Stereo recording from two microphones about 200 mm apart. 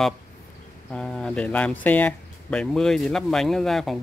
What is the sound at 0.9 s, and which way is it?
Speech, 5° left (ahead or behind).